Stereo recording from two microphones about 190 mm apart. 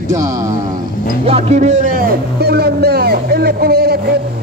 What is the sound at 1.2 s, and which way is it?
Speech, 35° right (ahead or behind).